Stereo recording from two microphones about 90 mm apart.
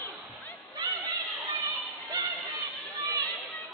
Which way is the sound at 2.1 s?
60° right (ahead or behind).